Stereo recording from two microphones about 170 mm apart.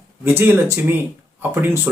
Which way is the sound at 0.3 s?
15° right (ahead or behind).